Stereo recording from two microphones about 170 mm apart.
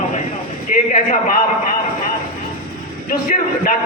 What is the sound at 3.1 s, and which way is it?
Speech, 55° left (ahead or behind).